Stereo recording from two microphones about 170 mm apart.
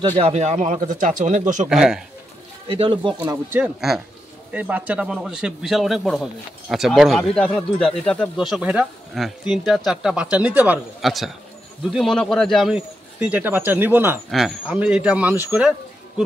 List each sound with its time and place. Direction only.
0.2 s speech: 40° right (ahead or behind)
1.7 s speech: centre (ahead or behind)
2.7 s speech: 30° right (ahead or behind)
3.2 s speech: 10° right (ahead or behind)